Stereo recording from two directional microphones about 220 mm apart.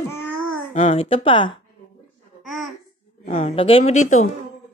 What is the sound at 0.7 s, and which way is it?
Speech, 30° left (ahead or behind).